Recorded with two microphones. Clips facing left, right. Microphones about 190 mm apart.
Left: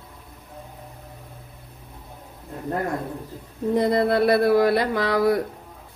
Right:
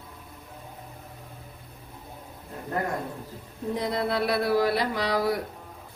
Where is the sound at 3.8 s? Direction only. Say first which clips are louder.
Left 8 dB; 50° left (ahead or behind).